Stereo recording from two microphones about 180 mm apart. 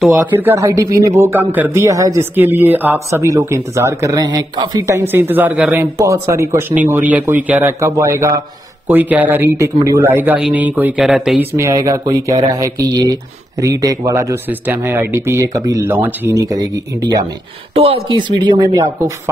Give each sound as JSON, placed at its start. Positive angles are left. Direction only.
{"t": 0.0, "sound": "a man's voice", "side_deg": -10}
{"t": 17.7, "sound": "speech", "side_deg": -30}